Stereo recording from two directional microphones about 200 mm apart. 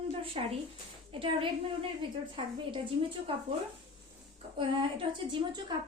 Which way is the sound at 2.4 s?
25° right (ahead or behind).